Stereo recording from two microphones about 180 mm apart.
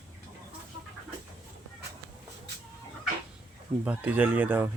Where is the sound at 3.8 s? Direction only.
10° right (ahead or behind).